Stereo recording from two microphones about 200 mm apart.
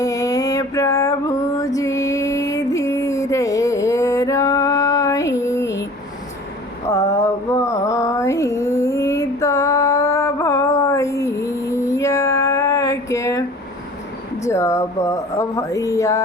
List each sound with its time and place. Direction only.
0.0 s music: 15° left (ahead or behind)
6.8 s mantra: 15° left (ahead or behind)
14.4 s a sound: 15° left (ahead or behind)